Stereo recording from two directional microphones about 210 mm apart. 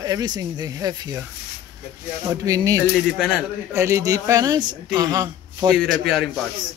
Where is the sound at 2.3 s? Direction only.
20° right (ahead or behind).